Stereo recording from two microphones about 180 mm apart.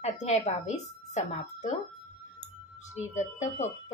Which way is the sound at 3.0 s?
40° left (ahead or behind).